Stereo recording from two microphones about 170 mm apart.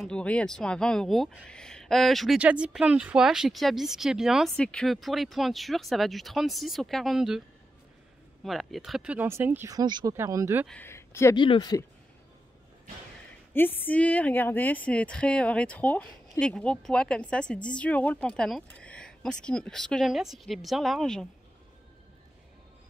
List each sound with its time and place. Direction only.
0.0 s speech: 5° left (ahead or behind)
8.5 s speech: centre (ahead or behind)
10.7 s speech: 15° left (ahead or behind)
11.3 s speech: 30° left (ahead or behind)
13.5 s speech: 10° left (ahead or behind)